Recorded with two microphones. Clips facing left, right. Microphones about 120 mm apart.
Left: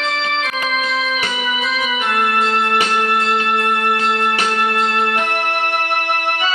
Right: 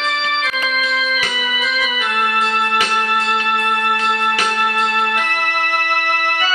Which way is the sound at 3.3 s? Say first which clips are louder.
Left 1 dB; 40° left (ahead or behind).